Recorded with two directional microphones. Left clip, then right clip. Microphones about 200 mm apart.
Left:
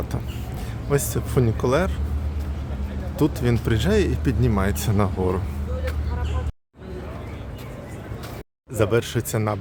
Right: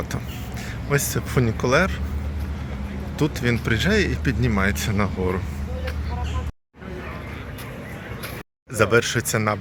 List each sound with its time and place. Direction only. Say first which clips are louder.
0.9 s speech: even; 15° left (ahead or behind)
3.2 s speech: left 1 dB; 20° left (ahead or behind)
8.7 s speech: right 3 dB; 10° left (ahead or behind)